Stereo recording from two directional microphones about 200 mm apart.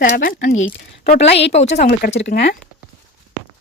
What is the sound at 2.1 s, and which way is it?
Speech, 55° left (ahead or behind).